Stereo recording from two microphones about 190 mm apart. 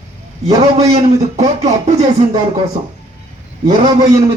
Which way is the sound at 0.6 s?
35° right (ahead or behind).